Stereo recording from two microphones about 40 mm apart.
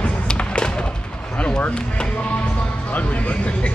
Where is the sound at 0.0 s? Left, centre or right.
Left.